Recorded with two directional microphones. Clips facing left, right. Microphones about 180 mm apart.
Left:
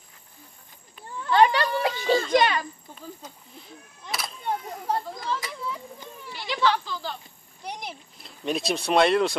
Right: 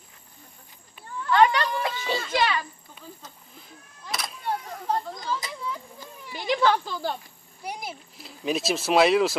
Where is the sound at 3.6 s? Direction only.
Centre (ahead or behind).